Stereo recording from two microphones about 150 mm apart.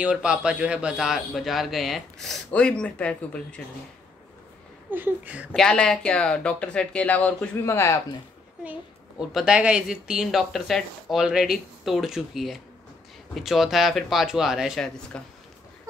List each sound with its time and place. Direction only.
0.0 s a man's voice: 5° right (ahead or behind)
4.9 s speech: 10° right (ahead or behind)
5.5 s speech: 5° left (ahead or behind)
9.2 s a man's voice: 5° right (ahead or behind)